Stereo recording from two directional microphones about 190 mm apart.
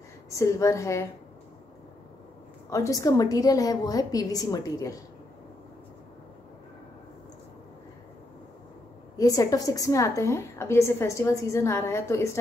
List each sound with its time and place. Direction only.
0.3 s a woman's voice: 15° left (ahead or behind)
2.7 s a woman's voice: 15° left (ahead or behind)
9.1 s a woman's voice: 20° left (ahead or behind)